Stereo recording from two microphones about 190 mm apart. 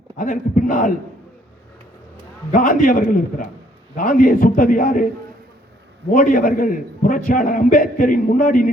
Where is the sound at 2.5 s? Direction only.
45° left (ahead or behind).